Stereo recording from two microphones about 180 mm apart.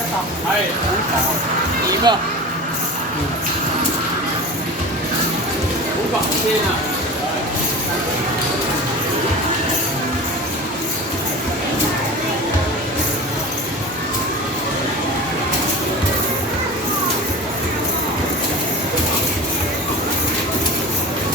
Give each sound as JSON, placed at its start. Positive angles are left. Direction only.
{"t": 2.1, "sound": "speech", "side_deg": -25}